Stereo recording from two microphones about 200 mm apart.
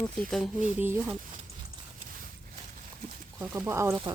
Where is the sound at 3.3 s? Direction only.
10° right (ahead or behind).